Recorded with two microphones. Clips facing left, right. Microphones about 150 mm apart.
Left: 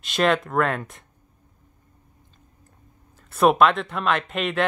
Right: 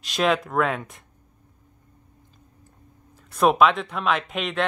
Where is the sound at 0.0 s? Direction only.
Centre (ahead or behind).